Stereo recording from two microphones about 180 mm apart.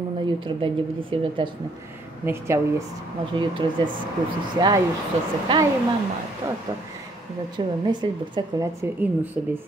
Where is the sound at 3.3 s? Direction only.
25° right (ahead or behind).